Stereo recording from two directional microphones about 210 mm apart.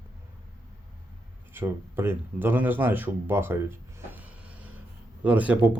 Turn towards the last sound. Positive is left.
turn(degrees=-5)  # may be behind; listen again after turning